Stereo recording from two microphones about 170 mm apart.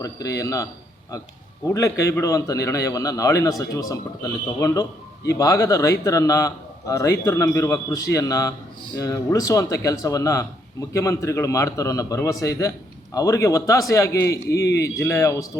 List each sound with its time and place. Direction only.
0.0 s speech: 20° left (ahead or behind)
14.6 s speech: 75° left (ahead or behind)
14.9 s speech: 15° left (ahead or behind)